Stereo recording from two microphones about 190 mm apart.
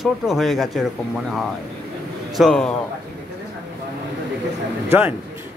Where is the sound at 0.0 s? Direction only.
Centre (ahead or behind).